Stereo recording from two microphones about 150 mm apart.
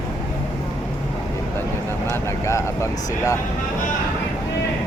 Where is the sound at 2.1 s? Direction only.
20° left (ahead or behind).